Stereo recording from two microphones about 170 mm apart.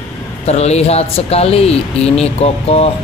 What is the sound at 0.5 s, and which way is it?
Speech, 40° left (ahead or behind).